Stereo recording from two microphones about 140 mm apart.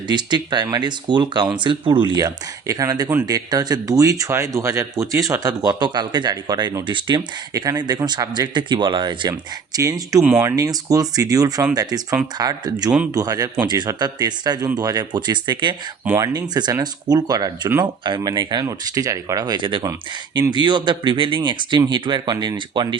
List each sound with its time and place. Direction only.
0.1 s speech: 30° right (ahead or behind)
2.1 s speech: 25° right (ahead or behind)
19.8 s speech: 20° right (ahead or behind)
20.5 s speech: 30° right (ahead or behind)